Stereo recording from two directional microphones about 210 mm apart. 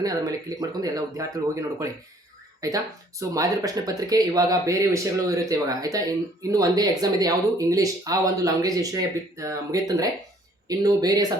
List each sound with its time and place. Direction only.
0.0 s speech: 15° right (ahead or behind)
2.6 s speech: 15° right (ahead or behind)